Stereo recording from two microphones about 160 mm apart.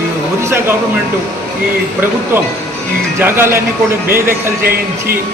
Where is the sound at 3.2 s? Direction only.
15° right (ahead or behind).